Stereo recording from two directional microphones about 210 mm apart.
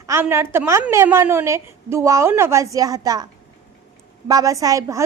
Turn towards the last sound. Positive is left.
turn(degrees=-15)  # may be behind; listen again after turning